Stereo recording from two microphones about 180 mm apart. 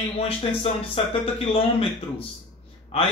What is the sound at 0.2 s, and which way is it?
Speech, 30° left (ahead or behind).